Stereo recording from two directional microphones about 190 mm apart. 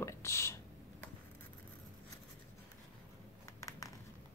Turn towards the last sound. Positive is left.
turn(degrees=15)  # may be behind; listen again after turning